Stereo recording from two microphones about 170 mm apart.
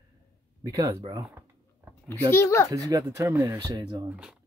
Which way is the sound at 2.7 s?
20° right (ahead or behind).